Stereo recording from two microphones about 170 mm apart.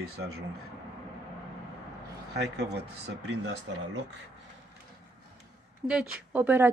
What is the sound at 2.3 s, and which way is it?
Speech, 75° right (ahead or behind).